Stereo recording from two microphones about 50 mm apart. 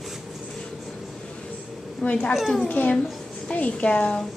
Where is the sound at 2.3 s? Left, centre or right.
Centre.